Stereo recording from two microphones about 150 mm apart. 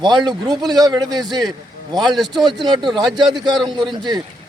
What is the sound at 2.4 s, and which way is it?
A man's voice, 30° right (ahead or behind).